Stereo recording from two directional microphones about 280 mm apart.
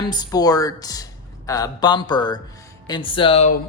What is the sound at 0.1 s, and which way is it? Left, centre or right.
Speech, centre.